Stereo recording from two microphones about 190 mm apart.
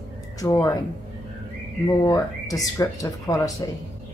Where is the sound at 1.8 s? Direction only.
20° left (ahead or behind).